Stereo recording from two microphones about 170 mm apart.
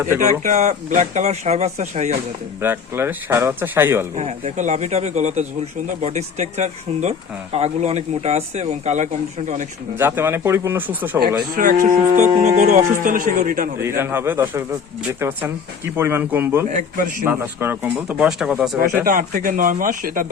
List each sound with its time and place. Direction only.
0.2 s speech: 45° right (ahead or behind)
2.6 s speech: 15° right (ahead or behind)
4.1 s speech: 40° right (ahead or behind)
10.0 s speech: 10° right (ahead or behind)
11.5 s speech: 50° right (ahead or behind)
13.8 s speech: 15° right (ahead or behind)
19.0 s speech: 55° right (ahead or behind)